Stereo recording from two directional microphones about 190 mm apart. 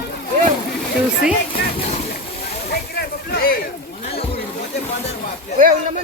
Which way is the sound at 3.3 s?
50° left (ahead or behind).